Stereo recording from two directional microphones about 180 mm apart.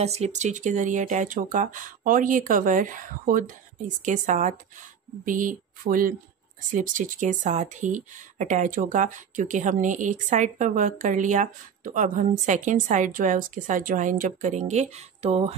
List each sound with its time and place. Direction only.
0.0 s a woman's voice: 35° right (ahead or behind)